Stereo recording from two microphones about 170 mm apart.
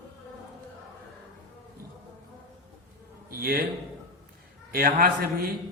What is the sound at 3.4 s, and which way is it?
Speech, 60° right (ahead or behind).